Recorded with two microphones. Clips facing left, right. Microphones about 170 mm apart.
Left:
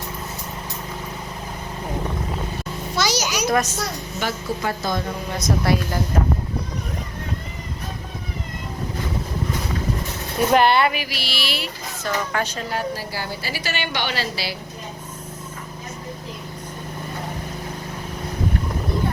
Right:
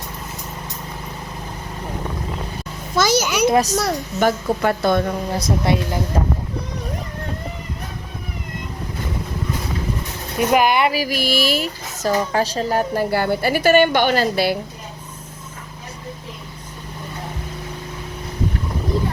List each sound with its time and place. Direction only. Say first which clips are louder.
2.9 s a sound: right 5 dB; 50° right (ahead or behind)
3.5 s speech: right 1 dB; 35° right (ahead or behind)
4.2 s speech: right 7 dB; 55° right (ahead or behind)
5.3 s speech: left 1 dB; 30° right (ahead or behind)
10.5 s speech: even; 10° right (ahead or behind)
10.9 s speech: right 9 dB; 45° right (ahead or behind)